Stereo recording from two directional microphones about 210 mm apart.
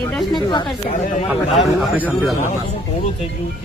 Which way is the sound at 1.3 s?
Centre (ahead or behind).